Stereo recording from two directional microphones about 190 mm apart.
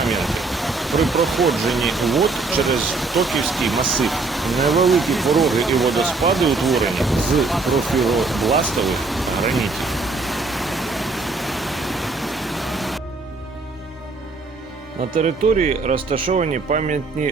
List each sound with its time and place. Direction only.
0.0 s speech: centre (ahead or behind)
15.1 s speech: 35° right (ahead or behind)